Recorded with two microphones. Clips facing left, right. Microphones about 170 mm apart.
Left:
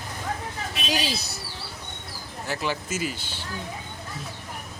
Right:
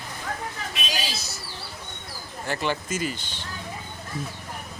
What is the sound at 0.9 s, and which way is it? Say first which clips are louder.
Speech: left 4 dB; 60° left (ahead or behind).